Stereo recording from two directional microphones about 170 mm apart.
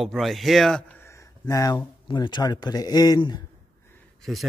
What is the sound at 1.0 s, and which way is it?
Speech, 20° left (ahead or behind).